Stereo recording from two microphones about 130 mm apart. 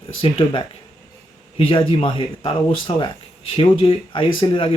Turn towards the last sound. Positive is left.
turn(degrees=45)  # may be behind; listen again after turning